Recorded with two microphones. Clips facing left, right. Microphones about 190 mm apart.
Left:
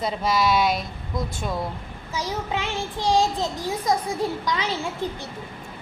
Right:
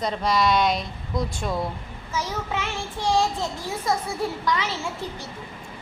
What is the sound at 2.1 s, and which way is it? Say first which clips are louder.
Child singing: left 1 dB; 15° left (ahead or behind).